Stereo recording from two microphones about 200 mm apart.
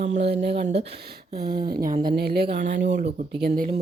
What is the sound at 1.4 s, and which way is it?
Speech, 50° right (ahead or behind).